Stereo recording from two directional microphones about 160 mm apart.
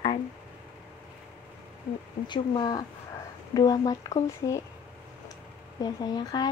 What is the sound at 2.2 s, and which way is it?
A woman's voice, 30° left (ahead or behind).